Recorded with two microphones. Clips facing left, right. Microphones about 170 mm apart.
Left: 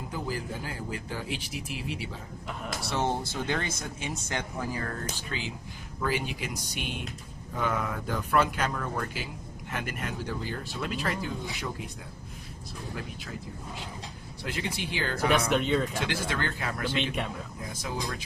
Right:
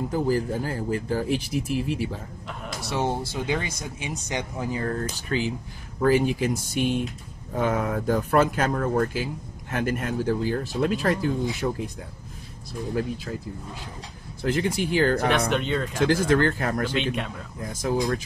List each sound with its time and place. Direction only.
0.1 s speech: 45° right (ahead or behind)
2.9 s speech: 15° right (ahead or behind)
5.3 s speech: 45° right (ahead or behind)
14.5 s speech: 45° right (ahead or behind)
15.3 s speech: centre (ahead or behind)
16.0 s speech: 45° right (ahead or behind)